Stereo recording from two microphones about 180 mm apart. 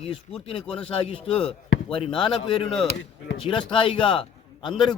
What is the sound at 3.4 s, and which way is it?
A man's voice, 30° left (ahead or behind).